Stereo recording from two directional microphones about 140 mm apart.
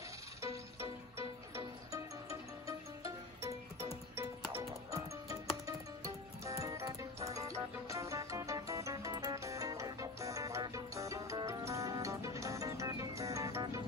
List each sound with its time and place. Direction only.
0.4 s music: 20° right (ahead or behind)
3.0 s music: 20° right (ahead or behind)